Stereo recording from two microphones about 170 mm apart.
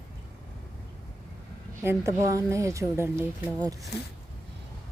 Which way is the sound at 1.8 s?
15° right (ahead or behind).